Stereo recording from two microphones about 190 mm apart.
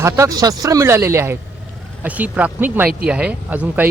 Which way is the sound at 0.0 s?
15° right (ahead or behind).